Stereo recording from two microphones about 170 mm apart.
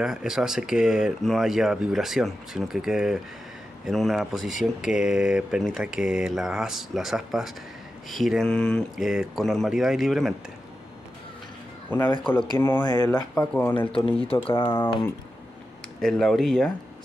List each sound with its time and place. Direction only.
0.0 s speech: 5° right (ahead or behind)
11.9 s speech: 10° left (ahead or behind)
13.7 s speech: 35° left (ahead or behind)
16.0 s speech: centre (ahead or behind)